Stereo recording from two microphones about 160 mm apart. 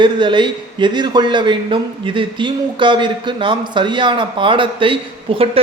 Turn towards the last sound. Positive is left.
turn(degrees=-35)  # may be behind; listen again after turning